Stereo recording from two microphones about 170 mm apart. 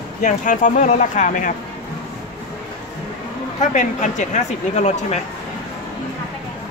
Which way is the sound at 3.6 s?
45° left (ahead or behind).